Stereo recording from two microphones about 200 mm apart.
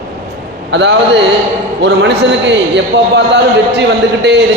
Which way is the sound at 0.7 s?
60° right (ahead or behind).